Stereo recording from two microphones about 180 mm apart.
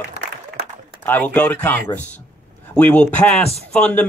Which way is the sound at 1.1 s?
10° left (ahead or behind).